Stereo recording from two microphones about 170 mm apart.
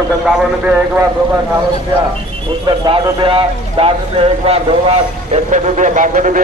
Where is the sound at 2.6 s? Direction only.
30° right (ahead or behind); by 6.4 s 50° right (ahead or behind).